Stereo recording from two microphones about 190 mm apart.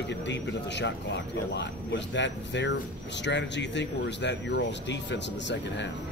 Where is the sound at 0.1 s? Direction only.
65° left (ahead or behind).